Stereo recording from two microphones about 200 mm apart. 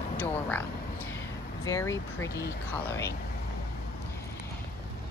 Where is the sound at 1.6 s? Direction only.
15° left (ahead or behind).